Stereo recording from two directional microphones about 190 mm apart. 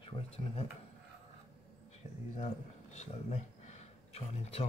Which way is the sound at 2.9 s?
35° left (ahead or behind).